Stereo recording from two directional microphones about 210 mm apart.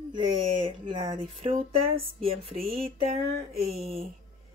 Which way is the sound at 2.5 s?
45° right (ahead or behind).